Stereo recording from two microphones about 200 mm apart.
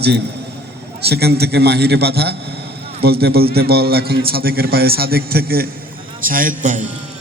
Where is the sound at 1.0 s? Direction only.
55° right (ahead or behind); by 6.8 s 40° right (ahead or behind).